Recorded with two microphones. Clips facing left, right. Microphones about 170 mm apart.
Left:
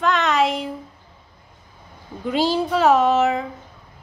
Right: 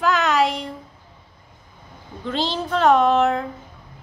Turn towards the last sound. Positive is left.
turn(degrees=5)  # may be behind; listen again after turning